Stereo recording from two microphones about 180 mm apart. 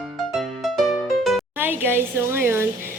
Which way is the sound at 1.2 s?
Centre (ahead or behind).